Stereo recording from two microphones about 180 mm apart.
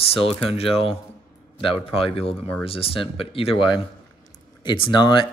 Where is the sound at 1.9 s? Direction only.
30° left (ahead or behind).